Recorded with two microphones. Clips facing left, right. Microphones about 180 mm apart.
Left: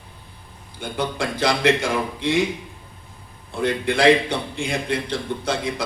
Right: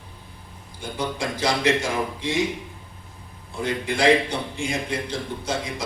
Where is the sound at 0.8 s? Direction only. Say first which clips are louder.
Left 3 dB; 60° left (ahead or behind).